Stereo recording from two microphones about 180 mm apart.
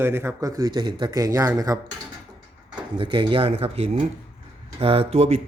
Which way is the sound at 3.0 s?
25° right (ahead or behind).